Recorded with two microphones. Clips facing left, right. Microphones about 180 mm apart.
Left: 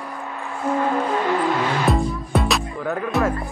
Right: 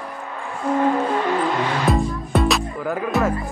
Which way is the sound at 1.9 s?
Centre (ahead or behind).